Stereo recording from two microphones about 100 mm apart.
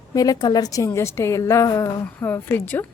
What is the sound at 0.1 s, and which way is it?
Speech, 40° left (ahead or behind).